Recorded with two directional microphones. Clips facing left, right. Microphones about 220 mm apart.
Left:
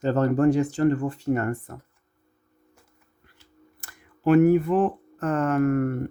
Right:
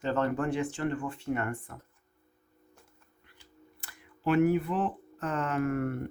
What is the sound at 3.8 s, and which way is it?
Speech, 45° left (ahead or behind).